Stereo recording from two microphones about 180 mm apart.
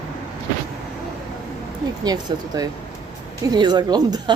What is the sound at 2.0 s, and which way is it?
Speech, 20° right (ahead or behind).